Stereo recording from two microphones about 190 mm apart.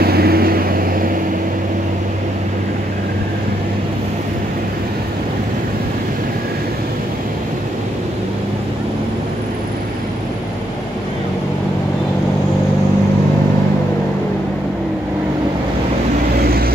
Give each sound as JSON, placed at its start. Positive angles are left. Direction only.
{"t": 0.0, "sound": "vehicle", "side_deg": -55}